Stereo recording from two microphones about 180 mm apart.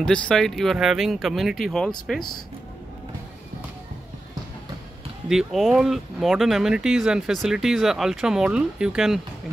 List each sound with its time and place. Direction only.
0.0 s speech: 5° left (ahead or behind)
5.3 s speech: centre (ahead or behind)